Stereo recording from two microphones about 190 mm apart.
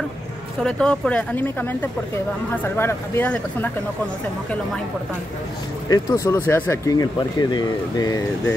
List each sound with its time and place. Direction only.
0.6 s speech: 5° left (ahead or behind)
5.9 s speech: 15° left (ahead or behind)